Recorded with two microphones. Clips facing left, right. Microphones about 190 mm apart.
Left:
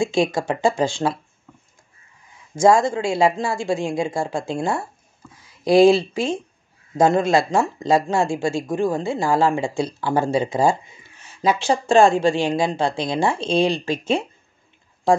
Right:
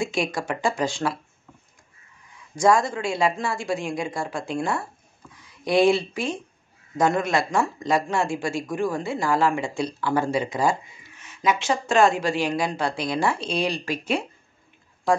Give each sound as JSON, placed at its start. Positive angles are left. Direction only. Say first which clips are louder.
{"t": 0.0, "sound": "speech", "louder": "left 6 dB", "side_deg": 25}
{"t": 2.5, "sound": "speech", "louder": "left 4 dB", "side_deg": 25}